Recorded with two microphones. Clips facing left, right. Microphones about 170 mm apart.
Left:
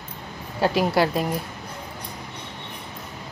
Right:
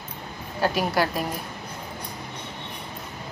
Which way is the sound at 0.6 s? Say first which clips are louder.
Left 3 dB; 25° left (ahead or behind).